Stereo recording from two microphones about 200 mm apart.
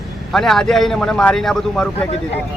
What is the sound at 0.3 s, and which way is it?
Speech, centre (ahead or behind).